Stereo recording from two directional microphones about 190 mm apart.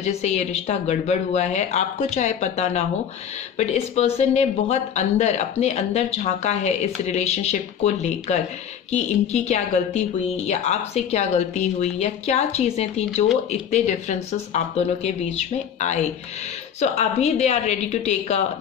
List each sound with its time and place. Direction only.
0.0 s speech: 35° left (ahead or behind)